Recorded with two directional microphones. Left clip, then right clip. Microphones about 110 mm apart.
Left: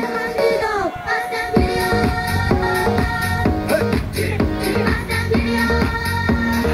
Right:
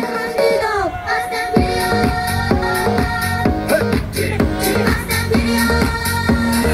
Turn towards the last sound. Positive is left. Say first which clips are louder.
# right 2 dB
turn(degrees=-35)  # may be behind; listen again after turning